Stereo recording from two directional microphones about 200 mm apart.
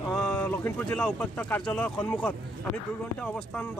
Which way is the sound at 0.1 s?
5° left (ahead or behind).